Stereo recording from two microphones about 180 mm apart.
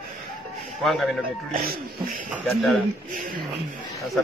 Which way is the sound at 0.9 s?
Centre (ahead or behind).